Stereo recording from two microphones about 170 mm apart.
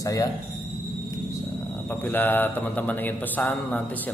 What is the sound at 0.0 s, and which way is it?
Speech, 20° left (ahead or behind).